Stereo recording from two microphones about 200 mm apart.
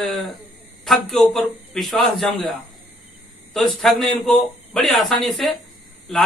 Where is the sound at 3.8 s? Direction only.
Centre (ahead or behind).